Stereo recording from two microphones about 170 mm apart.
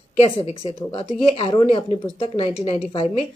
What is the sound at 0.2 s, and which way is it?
A woman's voice, 35° left (ahead or behind).